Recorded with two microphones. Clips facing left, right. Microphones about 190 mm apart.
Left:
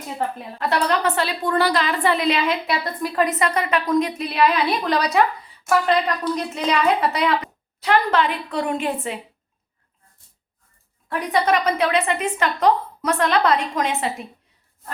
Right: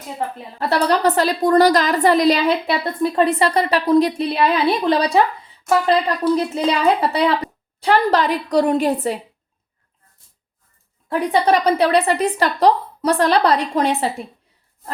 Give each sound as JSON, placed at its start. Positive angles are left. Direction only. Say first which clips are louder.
{"t": 0.6, "sound": "a woman's voice", "louder": "right 4 dB", "side_deg": -35}
{"t": 11.1, "sound": "a woman's voice", "louder": "right 4 dB", "side_deg": -30}